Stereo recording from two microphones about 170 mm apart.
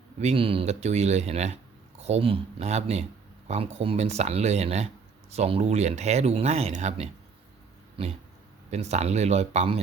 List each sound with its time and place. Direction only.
0.2 s speech: 35° right (ahead or behind)
8.7 s speech: 40° right (ahead or behind)